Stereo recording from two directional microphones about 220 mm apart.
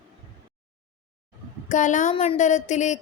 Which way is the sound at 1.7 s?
35° left (ahead or behind).